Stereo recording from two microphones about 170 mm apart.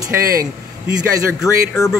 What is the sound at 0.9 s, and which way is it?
Speech, 5° right (ahead or behind).